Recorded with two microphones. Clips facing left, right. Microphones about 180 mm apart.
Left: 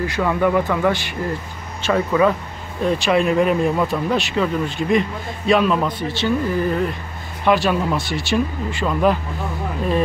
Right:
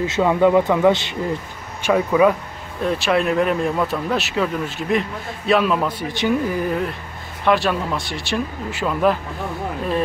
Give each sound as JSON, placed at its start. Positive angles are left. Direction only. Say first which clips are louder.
{"t": 0.0, "sound": "a man's voice", "louder": "right 3 dB", "side_deg": -20}
{"t": 7.4, "sound": "speech", "louder": "left 1 dB", "side_deg": 0}